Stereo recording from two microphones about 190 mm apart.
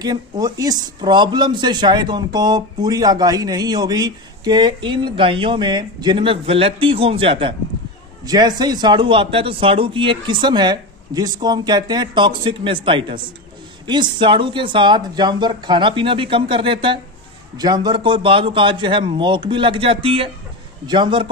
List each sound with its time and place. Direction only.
0.0 s a man's voice: 20° right (ahead or behind)